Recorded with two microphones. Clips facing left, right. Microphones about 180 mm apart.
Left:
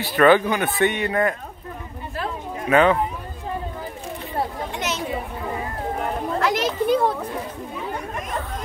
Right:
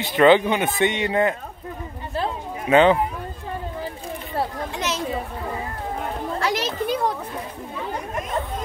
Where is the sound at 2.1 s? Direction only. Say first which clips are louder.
Right 2 dB; 25° right (ahead or behind).